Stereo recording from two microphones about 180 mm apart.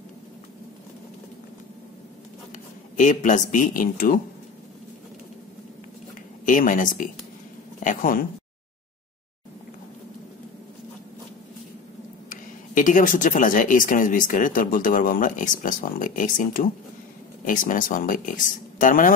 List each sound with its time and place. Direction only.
3.0 s speech: 45° left (ahead or behind)
6.4 s speech: 50° left (ahead or behind)
12.3 s speech: 45° left (ahead or behind)